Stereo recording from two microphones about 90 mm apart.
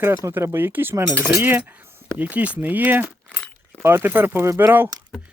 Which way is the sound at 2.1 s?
15° right (ahead or behind).